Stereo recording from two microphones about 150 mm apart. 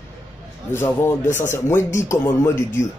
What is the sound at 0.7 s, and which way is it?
Speech, 15° left (ahead or behind).